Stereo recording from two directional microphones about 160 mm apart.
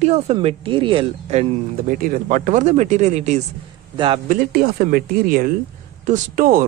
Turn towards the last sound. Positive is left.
turn(degrees=-60)  # may be behind; listen again after turning